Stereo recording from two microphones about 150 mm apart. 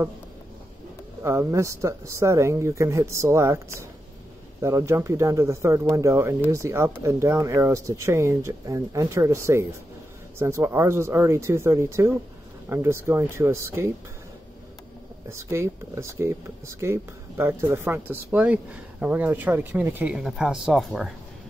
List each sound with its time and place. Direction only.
1.2 s speech: 15° right (ahead or behind)
15.2 s speech: 20° right (ahead or behind); by 21.1 s centre (ahead or behind)